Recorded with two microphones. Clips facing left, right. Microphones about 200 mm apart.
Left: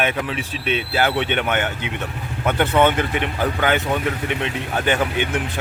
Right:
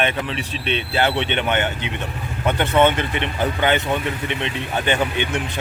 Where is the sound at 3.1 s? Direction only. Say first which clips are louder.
Left 1 dB; 5° left (ahead or behind).